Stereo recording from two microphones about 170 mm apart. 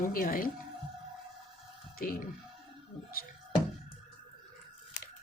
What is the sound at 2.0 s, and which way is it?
Speech, 60° left (ahead or behind).